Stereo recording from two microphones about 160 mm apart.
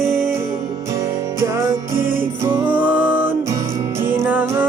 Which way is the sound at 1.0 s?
20° right (ahead or behind).